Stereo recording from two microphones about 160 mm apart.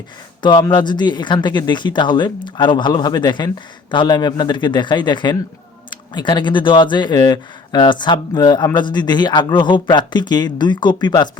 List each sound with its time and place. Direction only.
0.4 s speech: 30° left (ahead or behind)